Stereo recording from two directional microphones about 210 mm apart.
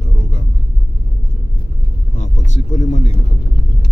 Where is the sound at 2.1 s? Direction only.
35° left (ahead or behind).